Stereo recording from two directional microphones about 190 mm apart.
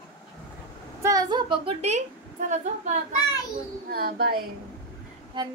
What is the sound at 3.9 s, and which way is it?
Speech, 55° right (ahead or behind).